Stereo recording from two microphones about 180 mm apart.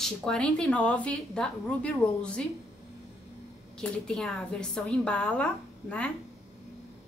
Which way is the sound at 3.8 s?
5° left (ahead or behind).